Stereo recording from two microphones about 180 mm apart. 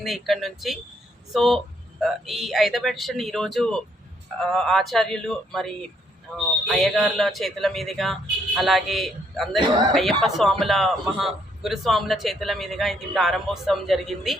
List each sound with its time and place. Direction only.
0.0 s a man's voice: centre (ahead or behind)
9.6 s speech: 25° right (ahead or behind)
9.9 s a man's voice: centre (ahead or behind)